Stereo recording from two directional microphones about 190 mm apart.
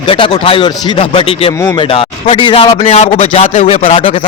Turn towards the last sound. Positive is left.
turn(degrees=30)  # may be behind; listen again after turning